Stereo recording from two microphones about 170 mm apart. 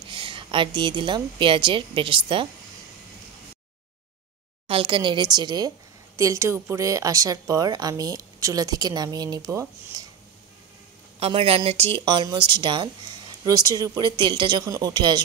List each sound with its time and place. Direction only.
0.1 s a woman's voice: 30° right (ahead or behind)
4.6 s speech: 30° right (ahead or behind)
11.1 s speech: 35° right (ahead or behind)